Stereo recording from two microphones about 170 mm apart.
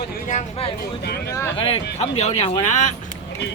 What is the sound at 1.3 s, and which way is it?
Speech, 15° left (ahead or behind).